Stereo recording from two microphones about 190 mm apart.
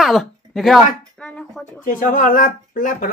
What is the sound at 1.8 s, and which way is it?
Speech, 45° left (ahead or behind).